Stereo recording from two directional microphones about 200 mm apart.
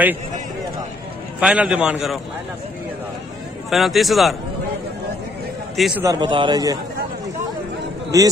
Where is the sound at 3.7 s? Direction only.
Centre (ahead or behind).